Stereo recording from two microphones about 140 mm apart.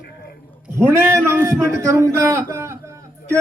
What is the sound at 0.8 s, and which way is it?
A man's voice, 20° right (ahead or behind).